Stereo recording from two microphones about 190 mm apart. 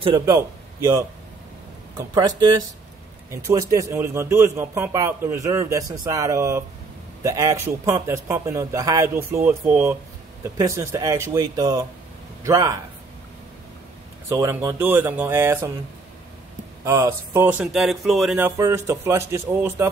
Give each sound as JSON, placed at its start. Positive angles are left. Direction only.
{"t": 0.2, "sound": "a man's voice", "side_deg": -15}
{"t": 14.3, "sound": "a man's voice", "side_deg": -15}
{"t": 16.8, "sound": "a man's voice", "side_deg": -15}
{"t": 18.4, "sound": "a man's voice", "side_deg": -15}